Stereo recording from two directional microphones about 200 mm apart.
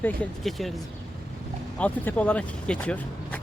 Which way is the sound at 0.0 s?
Centre (ahead or behind).